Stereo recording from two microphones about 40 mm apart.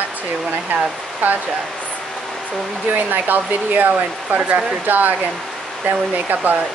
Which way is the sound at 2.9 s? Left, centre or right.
Right.